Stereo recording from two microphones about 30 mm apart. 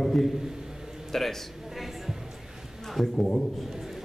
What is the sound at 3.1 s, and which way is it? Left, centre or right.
Speech, left.